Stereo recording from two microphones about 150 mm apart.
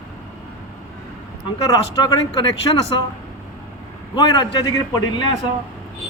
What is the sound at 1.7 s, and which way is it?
Speech, 25° left (ahead or behind).